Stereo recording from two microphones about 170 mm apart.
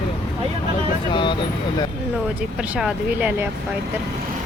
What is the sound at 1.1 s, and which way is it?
Speech, 30° left (ahead or behind).